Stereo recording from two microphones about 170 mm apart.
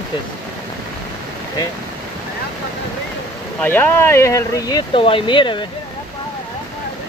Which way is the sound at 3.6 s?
10° left (ahead or behind).